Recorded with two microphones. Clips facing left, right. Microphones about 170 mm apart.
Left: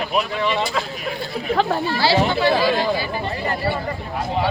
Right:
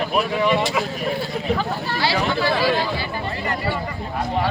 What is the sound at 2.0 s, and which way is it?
Speech, 25° left (ahead or behind).